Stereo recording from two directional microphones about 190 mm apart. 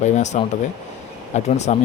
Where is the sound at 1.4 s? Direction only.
35° left (ahead or behind).